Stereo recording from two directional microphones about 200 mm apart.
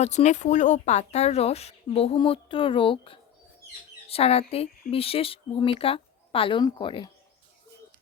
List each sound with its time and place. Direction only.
0.0 s speech: 35° left (ahead or behind)